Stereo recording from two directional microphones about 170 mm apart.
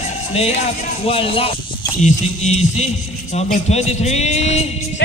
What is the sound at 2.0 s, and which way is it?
Music, 40° left (ahead or behind).